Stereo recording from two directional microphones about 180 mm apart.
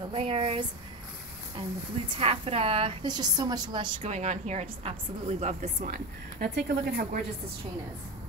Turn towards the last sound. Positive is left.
turn(degrees=-55)  # may be behind; listen again after turning